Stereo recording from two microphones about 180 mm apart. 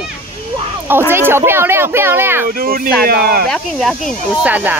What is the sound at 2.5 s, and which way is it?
Speech, 55° right (ahead or behind).